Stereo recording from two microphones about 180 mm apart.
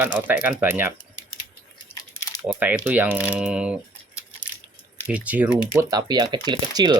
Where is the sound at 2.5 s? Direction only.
10° right (ahead or behind).